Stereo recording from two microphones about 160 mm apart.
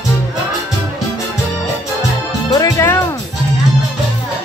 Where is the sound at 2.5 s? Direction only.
20° left (ahead or behind).